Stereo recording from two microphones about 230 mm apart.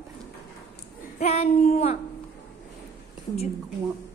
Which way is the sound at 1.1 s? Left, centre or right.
Left.